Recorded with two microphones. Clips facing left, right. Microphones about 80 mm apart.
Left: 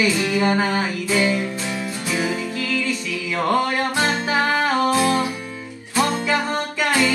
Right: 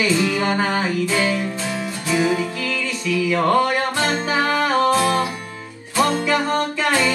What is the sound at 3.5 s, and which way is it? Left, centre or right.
Music, left.